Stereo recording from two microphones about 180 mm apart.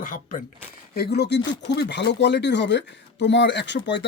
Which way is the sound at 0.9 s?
60° left (ahead or behind).